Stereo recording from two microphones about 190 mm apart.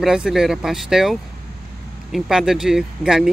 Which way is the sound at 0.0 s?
5° right (ahead or behind).